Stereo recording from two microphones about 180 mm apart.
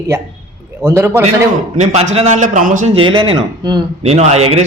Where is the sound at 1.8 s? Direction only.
40° right (ahead or behind).